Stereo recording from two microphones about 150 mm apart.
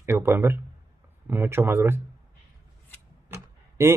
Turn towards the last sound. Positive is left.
turn(degrees=-20)  # may be behind; listen again after turning